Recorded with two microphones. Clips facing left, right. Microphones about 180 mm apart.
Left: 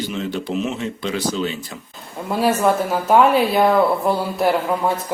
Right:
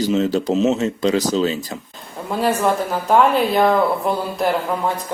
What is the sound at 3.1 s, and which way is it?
Speech, 5° left (ahead or behind).